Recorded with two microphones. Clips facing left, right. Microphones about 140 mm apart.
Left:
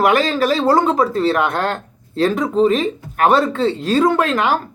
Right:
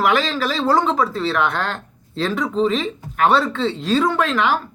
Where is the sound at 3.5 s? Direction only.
45° left (ahead or behind).